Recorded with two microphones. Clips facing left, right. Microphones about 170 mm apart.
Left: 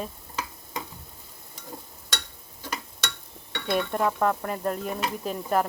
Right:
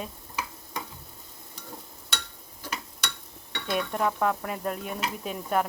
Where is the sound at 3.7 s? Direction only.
Centre (ahead or behind).